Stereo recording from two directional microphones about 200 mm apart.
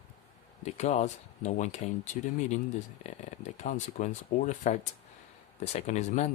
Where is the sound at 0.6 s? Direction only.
35° left (ahead or behind).